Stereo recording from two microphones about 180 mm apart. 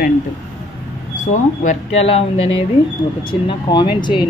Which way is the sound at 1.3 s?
45° left (ahead or behind).